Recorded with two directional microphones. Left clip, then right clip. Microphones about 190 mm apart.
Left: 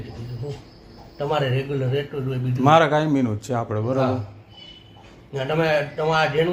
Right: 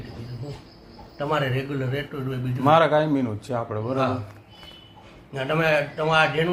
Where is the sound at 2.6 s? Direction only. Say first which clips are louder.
Left 1 dB; 45° left (ahead or behind).